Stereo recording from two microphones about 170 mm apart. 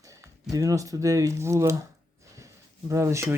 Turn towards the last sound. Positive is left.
turn(degrees=-15)  # may be behind; listen again after turning